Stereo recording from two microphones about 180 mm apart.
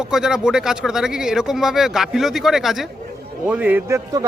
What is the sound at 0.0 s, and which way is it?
A man's voice, 5° right (ahead or behind).